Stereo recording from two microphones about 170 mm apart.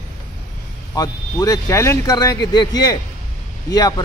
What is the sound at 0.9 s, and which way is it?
A man's voice, 20° left (ahead or behind).